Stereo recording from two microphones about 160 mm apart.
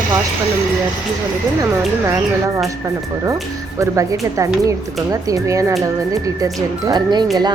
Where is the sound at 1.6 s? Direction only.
20° right (ahead or behind).